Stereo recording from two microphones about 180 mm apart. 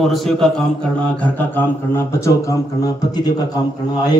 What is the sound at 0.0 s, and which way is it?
A man's voice, centre (ahead or behind).